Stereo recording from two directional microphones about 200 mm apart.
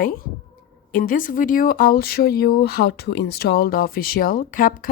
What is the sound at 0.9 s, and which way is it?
Speech, 45° left (ahead or behind).